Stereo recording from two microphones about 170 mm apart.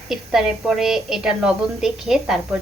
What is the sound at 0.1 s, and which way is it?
A woman's voice, centre (ahead or behind).